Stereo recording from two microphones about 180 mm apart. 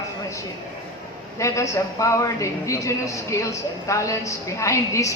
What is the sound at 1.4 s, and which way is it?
A man's voice, 15° left (ahead or behind).